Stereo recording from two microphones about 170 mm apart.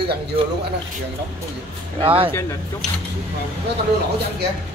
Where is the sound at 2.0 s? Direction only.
30° right (ahead or behind).